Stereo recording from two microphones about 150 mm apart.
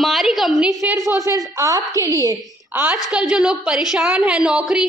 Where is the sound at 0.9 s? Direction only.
25° left (ahead or behind).